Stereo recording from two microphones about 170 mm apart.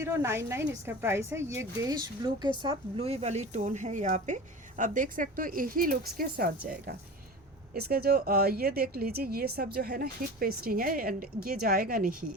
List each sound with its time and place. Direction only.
0.0 s a woman's voice: 15° right (ahead or behind); by 6.5 s 55° right (ahead or behind)
7.7 s speech: 65° right (ahead or behind)